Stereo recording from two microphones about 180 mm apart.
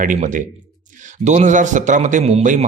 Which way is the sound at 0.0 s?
45° right (ahead or behind).